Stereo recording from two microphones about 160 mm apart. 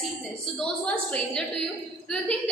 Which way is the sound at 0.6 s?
5° left (ahead or behind).